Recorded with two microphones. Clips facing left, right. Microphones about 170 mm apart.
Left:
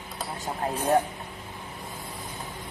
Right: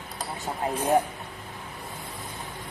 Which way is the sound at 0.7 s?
10° right (ahead or behind).